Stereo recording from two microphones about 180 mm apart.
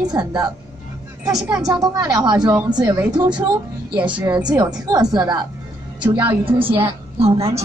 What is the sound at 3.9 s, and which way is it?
Speech, 10° right (ahead or behind).